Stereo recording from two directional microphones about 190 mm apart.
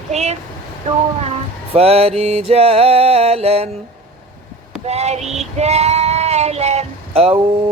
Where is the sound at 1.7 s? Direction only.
30° right (ahead or behind).